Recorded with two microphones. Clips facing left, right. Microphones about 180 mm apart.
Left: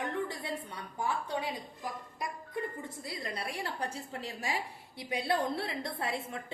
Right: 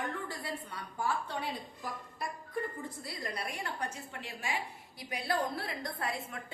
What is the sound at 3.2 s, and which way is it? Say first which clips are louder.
A woman's voice: left 1 dB; 30° left (ahead or behind).